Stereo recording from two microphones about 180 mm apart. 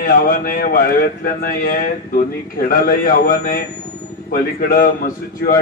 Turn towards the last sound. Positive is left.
turn(degrees=50)  # may be behind; listen again after turning